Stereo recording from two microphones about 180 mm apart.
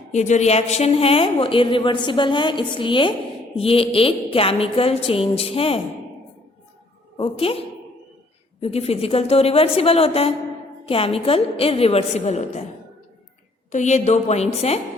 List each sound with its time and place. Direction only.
0.1 s a woman's voice: 40° left (ahead or behind)
7.2 s a woman's voice: 30° left (ahead or behind)
8.6 s a woman's voice: 35° left (ahead or behind)
13.7 s a woman's voice: 40° left (ahead or behind)